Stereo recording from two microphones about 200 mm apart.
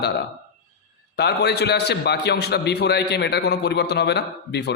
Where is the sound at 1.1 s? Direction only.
55° left (ahead or behind).